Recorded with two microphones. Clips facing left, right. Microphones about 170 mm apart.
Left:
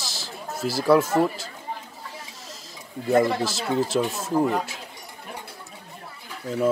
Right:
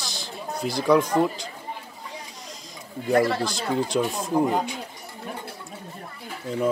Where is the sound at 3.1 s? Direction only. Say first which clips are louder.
Left 1 dB; 20° left (ahead or behind).